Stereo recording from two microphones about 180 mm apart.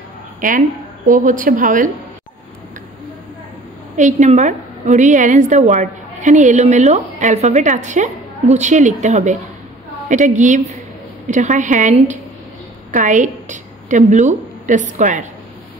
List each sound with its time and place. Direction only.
0.4 s a woman's voice: 45° right (ahead or behind)
3.9 s a woman's voice: 40° right (ahead or behind)